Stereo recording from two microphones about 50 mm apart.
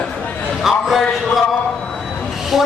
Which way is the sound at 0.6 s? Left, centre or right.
Centre.